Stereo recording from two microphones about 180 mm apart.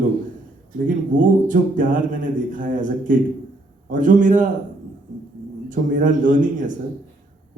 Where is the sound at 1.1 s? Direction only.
45° right (ahead or behind).